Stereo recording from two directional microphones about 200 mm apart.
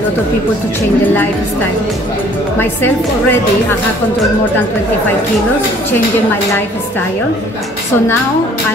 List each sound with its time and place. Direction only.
2.6 s speech: 10° left (ahead or behind)